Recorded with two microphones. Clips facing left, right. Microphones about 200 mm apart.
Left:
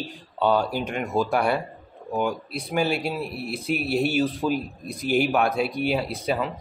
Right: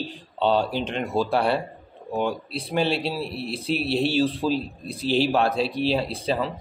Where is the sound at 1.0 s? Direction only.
30° right (ahead or behind).